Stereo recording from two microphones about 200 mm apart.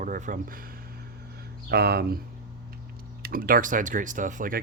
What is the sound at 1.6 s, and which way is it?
Speech, 50° right (ahead or behind).